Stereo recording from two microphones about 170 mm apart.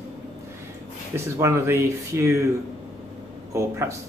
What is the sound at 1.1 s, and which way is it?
Speech, 15° right (ahead or behind).